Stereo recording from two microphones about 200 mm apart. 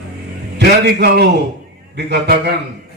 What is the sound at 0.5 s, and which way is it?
A man's voice, 55° right (ahead or behind).